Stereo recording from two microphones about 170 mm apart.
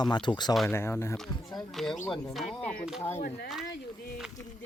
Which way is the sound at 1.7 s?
5° left (ahead or behind).